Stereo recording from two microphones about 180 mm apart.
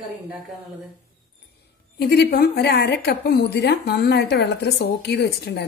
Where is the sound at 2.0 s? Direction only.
60° left (ahead or behind).